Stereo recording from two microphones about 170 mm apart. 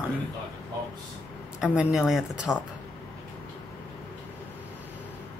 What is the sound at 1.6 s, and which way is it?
Speech, 5° right (ahead or behind).